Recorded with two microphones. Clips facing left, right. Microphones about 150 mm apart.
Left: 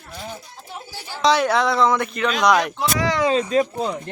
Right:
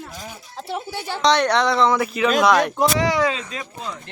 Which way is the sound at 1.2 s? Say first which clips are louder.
Even; 5° left (ahead or behind).